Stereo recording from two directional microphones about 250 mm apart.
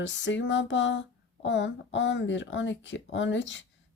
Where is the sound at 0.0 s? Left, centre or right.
Left.